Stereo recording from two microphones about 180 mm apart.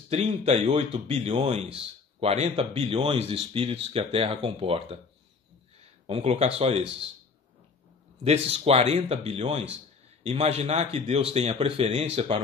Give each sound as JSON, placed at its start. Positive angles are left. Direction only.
{"t": 0.1, "sound": "a man's voice", "side_deg": -35}
{"t": 6.0, "sound": "a man's voice", "side_deg": -30}
{"t": 8.2, "sound": "a man's voice", "side_deg": -35}